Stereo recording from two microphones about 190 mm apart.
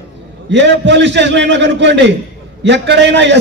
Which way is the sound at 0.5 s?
70° right (ahead or behind).